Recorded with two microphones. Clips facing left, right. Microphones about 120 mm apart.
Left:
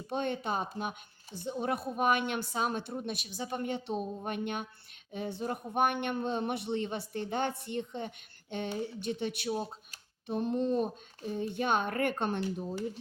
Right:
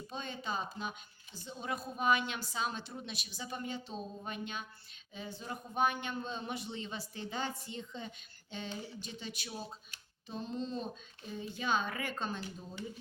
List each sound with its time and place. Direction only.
0.1 s speech: 60° left (ahead or behind)